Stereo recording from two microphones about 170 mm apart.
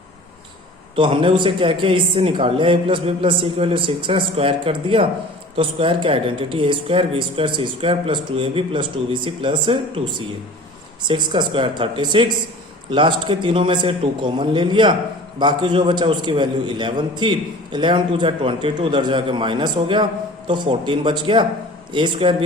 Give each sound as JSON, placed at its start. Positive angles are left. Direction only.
{"t": 0.9, "sound": "a woman's voice", "side_deg": -30}